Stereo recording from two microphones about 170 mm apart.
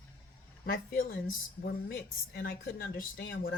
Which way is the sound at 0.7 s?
60° left (ahead or behind).